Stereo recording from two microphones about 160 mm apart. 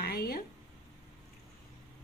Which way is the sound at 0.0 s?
75° left (ahead or behind).